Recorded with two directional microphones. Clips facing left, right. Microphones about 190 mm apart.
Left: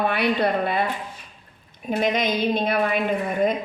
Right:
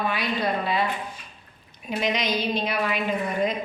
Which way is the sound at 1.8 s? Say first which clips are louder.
Left 4 dB; 50° left (ahead or behind).